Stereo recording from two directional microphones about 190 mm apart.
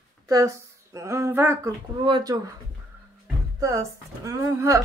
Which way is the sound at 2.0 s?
20° right (ahead or behind).